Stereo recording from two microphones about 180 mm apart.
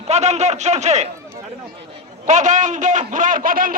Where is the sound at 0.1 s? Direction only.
40° right (ahead or behind).